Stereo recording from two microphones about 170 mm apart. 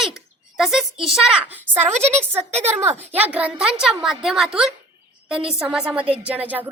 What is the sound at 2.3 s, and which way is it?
Speech, 40° right (ahead or behind).